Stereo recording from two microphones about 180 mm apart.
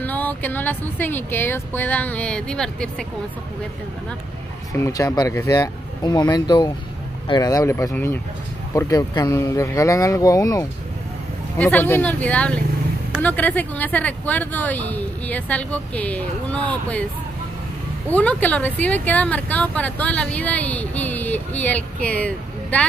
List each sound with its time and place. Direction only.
0.0 s speech: 10° left (ahead or behind)
4.7 s speech: 15° left (ahead or behind)
18.1 s speech: 10° left (ahead or behind)